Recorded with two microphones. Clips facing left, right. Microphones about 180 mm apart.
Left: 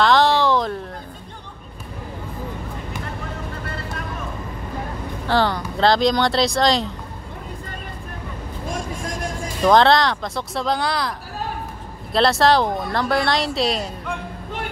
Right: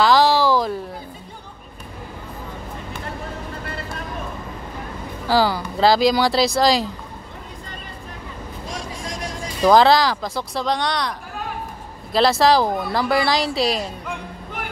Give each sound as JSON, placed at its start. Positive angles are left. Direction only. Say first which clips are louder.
{"t": 0.0, "sound": "a sound", "louder": "right 1 dB", "side_deg": -5}
{"t": 5.3, "sound": "speech", "louder": "right 1 dB", "side_deg": -5}
{"t": 8.6, "sound": "vehicle", "louder": "left 4 dB", "side_deg": 50}
{"t": 9.6, "sound": "speech", "louder": "right 1 dB", "side_deg": 0}